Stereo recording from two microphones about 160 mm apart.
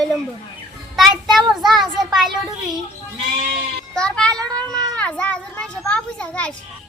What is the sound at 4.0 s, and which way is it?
A child's voice, 5° left (ahead or behind).